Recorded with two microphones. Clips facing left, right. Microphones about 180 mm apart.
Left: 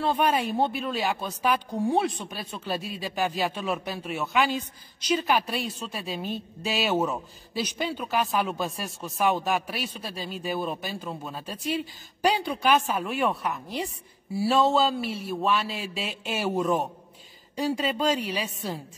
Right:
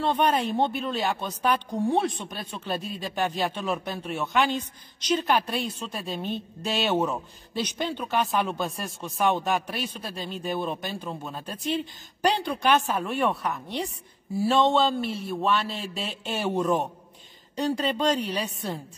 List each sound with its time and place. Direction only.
0.0 s a woman's voice: 5° left (ahead or behind)